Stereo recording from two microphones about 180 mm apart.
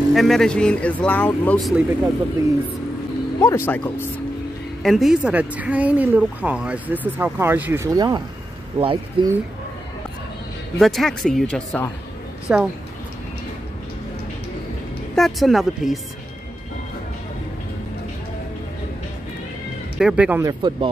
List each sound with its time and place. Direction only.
0.1 s speech: centre (ahead or behind)
3.3 s speech: 15° left (ahead or behind)
4.8 s speech: centre (ahead or behind); by 9.3 s 30° right (ahead or behind)
10.8 s speech: centre (ahead or behind)
12.5 s speech: 5° right (ahead or behind)
15.1 s speech: centre (ahead or behind)
20.0 s speech: 5° right (ahead or behind)
20.4 s speech: 25° right (ahead or behind)